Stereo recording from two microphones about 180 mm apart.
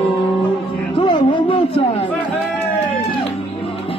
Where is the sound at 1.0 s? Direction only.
25° left (ahead or behind).